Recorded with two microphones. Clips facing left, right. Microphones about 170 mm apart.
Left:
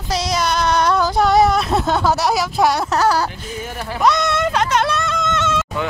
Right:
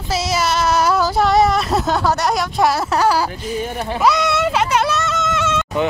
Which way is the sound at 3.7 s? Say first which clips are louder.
Right 3 dB; 20° right (ahead or behind).